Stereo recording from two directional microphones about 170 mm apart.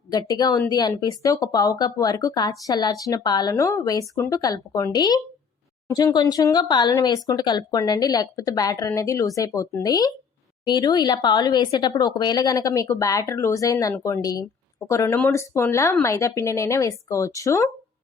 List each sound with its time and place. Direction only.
0.1 s speech: 25° left (ahead or behind)